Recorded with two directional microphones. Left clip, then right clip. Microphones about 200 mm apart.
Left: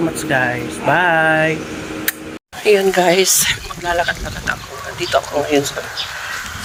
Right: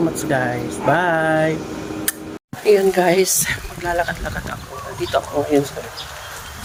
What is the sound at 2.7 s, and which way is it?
Speech, 5° right (ahead or behind).